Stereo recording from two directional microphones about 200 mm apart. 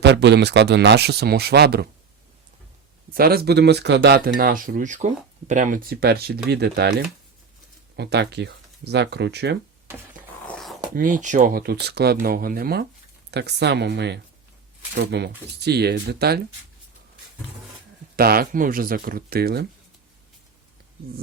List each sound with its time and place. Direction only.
0.0 s speech: 60° right (ahead or behind)
3.2 s speech: 50° right (ahead or behind)
4.4 s speech: 45° right (ahead or behind)
7.9 s speech: 55° right (ahead or behind)
10.4 s a sound: 5° left (ahead or behind)
10.9 s speech: 40° right (ahead or behind)
18.2 s speech: 50° right (ahead or behind)